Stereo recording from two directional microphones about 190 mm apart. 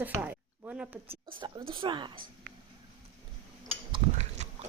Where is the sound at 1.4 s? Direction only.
25° right (ahead or behind).